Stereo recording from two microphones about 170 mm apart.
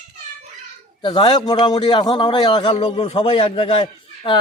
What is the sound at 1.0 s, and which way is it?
A man's voice, 25° left (ahead or behind).